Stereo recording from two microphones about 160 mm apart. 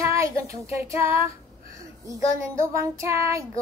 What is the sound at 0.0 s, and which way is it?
Child singing, 20° right (ahead or behind).